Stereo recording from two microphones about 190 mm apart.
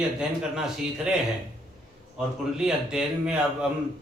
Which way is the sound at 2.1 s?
5° right (ahead or behind).